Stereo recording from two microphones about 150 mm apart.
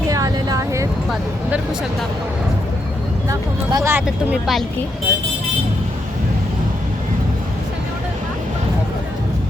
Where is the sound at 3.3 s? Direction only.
20° right (ahead or behind).